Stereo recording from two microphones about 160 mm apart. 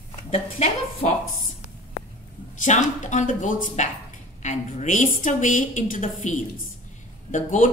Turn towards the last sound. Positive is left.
turn(degrees=50)  # may be behind; listen again after turning